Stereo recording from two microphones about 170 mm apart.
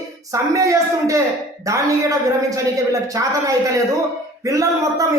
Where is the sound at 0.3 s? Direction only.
20° right (ahead or behind).